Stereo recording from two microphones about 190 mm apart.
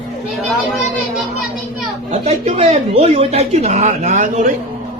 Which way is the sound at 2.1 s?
35° right (ahead or behind).